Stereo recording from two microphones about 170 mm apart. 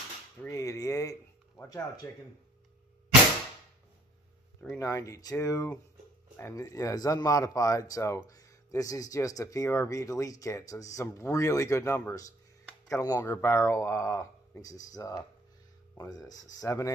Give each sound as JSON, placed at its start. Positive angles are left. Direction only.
{"t": 0.5, "sound": "a sound", "side_deg": 20}
{"t": 1.6, "sound": "speech", "side_deg": 20}
{"t": 4.7, "sound": "speech", "side_deg": 20}